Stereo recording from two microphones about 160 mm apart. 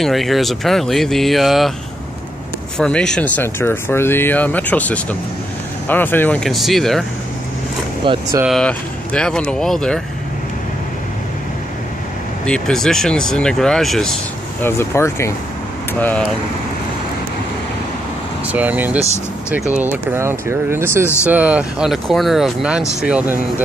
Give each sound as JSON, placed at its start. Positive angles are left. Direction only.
{"t": 0.0, "sound": "speech", "side_deg": 0}
{"t": 2.8, "sound": "speech", "side_deg": 5}
{"t": 8.0, "sound": "speech", "side_deg": -30}
{"t": 8.5, "sound": "speech", "side_deg": 5}
{"t": 12.4, "sound": "speech", "side_deg": 5}
{"t": 14.6, "sound": "speech", "side_deg": 15}
{"t": 18.5, "sound": "speech", "side_deg": -10}
{"t": 21.0, "sound": "speech", "side_deg": 15}
{"t": 21.3, "sound": "speech", "side_deg": -10}